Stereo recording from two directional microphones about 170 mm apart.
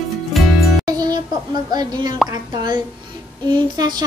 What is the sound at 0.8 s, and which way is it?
Music, 20° right (ahead or behind).